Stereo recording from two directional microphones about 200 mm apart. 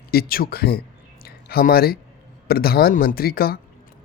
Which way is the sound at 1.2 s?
50° left (ahead or behind).